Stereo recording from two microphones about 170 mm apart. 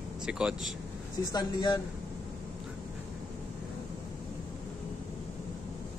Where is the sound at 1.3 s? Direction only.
25° left (ahead or behind).